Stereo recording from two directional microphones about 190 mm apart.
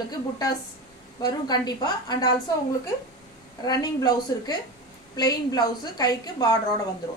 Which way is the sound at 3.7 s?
20° left (ahead or behind).